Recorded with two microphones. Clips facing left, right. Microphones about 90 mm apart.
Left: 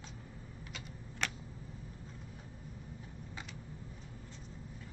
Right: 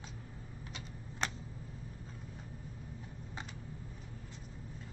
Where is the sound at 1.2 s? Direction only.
30° right (ahead or behind).